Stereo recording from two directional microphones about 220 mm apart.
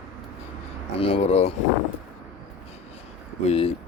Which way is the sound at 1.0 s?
25° left (ahead or behind).